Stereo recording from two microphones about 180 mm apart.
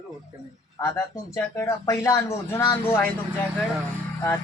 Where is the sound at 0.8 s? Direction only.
15° left (ahead or behind).